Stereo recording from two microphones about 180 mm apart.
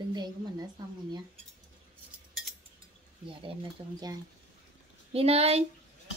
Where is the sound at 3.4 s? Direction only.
25° right (ahead or behind).